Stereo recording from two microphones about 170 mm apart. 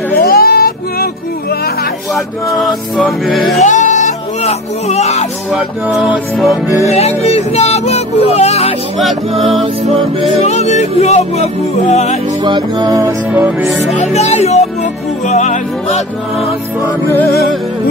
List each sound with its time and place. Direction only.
0.2 s child singing: 65° left (ahead or behind)
2.1 s speech: centre (ahead or behind)
3.5 s music: 45° left (ahead or behind)
5.5 s speech: 5° right (ahead or behind)
6.9 s music: 40° left (ahead or behind)
9.8 s music: 35° right (ahead or behind)
10.4 s speech: 40° left (ahead or behind)
12.4 s music: 25° right (ahead or behind)
13.9 s speech: 40° left (ahead or behind)
15.2 s music: 45° left (ahead or behind)